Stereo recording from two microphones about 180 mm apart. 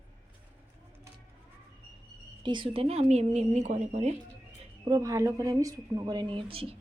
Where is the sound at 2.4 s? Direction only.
25° right (ahead or behind).